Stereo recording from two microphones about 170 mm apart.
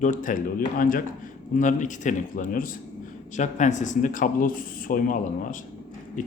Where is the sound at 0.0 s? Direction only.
50° left (ahead or behind).